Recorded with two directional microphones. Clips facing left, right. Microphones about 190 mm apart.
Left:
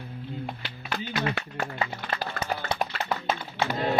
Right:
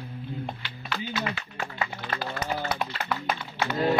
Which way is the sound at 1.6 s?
40° left (ahead or behind).